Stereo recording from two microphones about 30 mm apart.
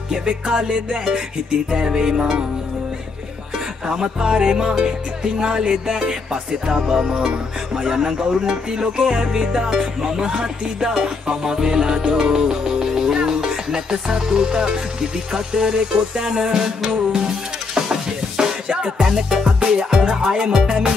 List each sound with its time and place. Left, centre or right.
0.1 s music: right
3.8 s music: right
7.2 s music: centre
18.4 s music: right
18.9 s music: centre